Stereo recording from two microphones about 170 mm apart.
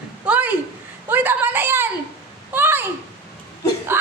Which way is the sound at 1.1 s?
10° right (ahead or behind).